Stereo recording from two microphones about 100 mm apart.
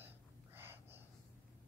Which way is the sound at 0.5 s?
20° right (ahead or behind).